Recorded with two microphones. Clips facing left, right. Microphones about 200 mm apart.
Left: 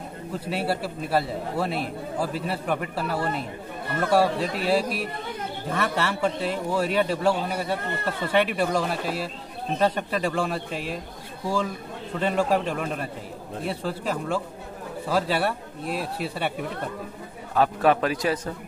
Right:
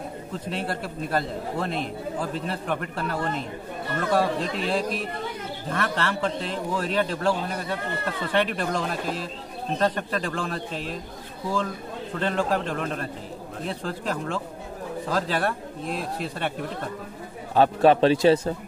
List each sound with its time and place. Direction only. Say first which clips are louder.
0.5 s a man's voice: left 3 dB; 5° left (ahead or behind)
12.2 s a man's voice: left 2 dB; 10° left (ahead or behind)
17.6 s a man's voice: right 3 dB; 30° right (ahead or behind)